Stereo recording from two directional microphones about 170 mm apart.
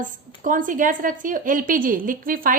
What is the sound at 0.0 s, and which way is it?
A woman's voice, 50° right (ahead or behind).